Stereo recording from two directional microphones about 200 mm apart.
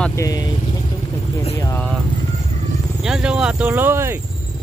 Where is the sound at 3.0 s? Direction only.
5° right (ahead or behind).